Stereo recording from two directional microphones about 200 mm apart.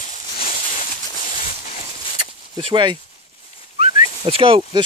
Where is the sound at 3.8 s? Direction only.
30° right (ahead or behind).